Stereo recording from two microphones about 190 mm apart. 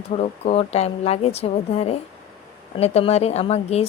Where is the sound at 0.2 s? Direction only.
35° left (ahead or behind).